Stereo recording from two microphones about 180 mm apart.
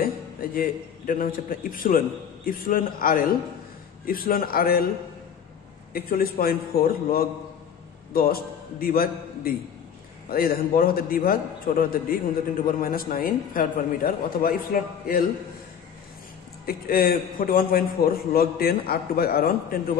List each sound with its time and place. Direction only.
0.0 s a man's voice: 55° left (ahead or behind)
5.9 s a man's voice: 55° left (ahead or behind)
16.6 s a man's voice: 55° left (ahead or behind)